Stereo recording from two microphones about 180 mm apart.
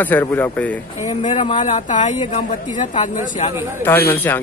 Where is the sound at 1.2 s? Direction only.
35° left (ahead or behind).